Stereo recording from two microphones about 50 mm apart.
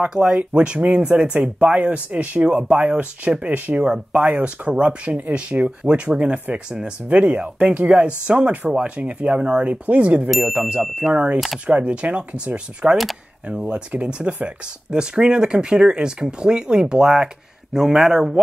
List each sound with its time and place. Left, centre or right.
0.1 s speech: centre; by 3.8 s right
3.8 s speech: centre
4.2 s speech: right
10.6 s speech: centre
11.6 s speech: right
12.9 s speech: centre
13.5 s speech: centre